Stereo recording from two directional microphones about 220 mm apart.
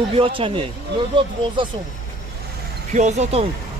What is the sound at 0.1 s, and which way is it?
Speech, 25° right (ahead or behind).